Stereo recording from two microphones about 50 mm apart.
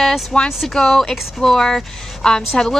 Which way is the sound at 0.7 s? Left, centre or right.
Centre.